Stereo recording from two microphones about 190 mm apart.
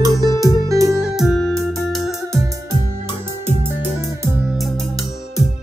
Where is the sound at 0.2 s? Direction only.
20° right (ahead or behind).